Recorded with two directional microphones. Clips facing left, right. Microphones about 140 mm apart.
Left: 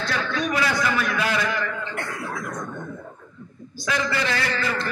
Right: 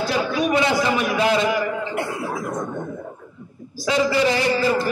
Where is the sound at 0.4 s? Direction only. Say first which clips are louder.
Right 4 dB; 25° right (ahead or behind).